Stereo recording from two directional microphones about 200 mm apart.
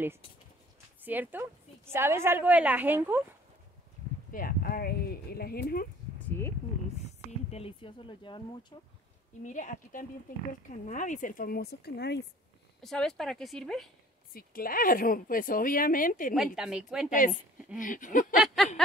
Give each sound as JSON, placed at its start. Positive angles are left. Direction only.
{"t": 1.0, "sound": "a woman's voice", "side_deg": -10}
{"t": 4.3, "sound": "speech", "side_deg": 45}
{"t": 6.1, "sound": "a sound", "side_deg": 10}
{"t": 7.2, "sound": "speech", "side_deg": 30}
{"t": 9.4, "sound": "a woman's voice", "side_deg": 40}
{"t": 12.8, "sound": "speech", "side_deg": 0}
{"t": 14.3, "sound": "speech", "side_deg": 45}
{"t": 16.5, "sound": "a woman's voice", "side_deg": -5}
{"t": 17.7, "sound": "a woman's voice", "side_deg": 40}
{"t": 18.4, "sound": "speech", "side_deg": 0}